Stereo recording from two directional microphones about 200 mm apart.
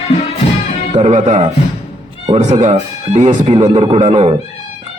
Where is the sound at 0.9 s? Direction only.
35° right (ahead or behind).